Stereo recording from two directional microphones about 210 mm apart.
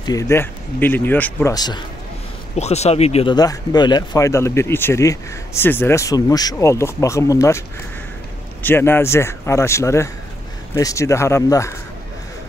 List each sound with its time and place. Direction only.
0.0 s speech: 15° left (ahead or behind)
2.5 s speech: 30° left (ahead or behind); by 7.6 s 15° left (ahead or behind)
8.6 s speech: 10° left (ahead or behind)